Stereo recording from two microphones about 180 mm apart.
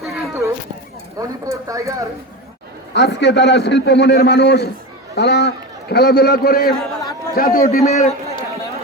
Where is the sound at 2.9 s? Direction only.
75° left (ahead or behind); by 7.8 s 55° left (ahead or behind).